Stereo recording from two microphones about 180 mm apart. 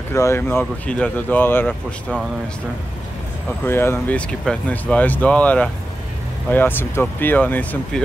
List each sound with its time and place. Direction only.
0.1 s speech: 15° left (ahead or behind)
3.4 s speech: 15° left (ahead or behind)